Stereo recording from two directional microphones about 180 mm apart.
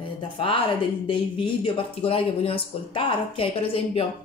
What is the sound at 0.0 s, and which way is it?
Speech, 30° left (ahead or behind).